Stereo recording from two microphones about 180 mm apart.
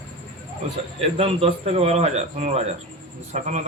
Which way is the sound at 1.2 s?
35° right (ahead or behind).